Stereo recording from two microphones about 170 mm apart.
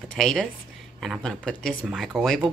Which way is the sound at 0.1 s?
5° left (ahead or behind).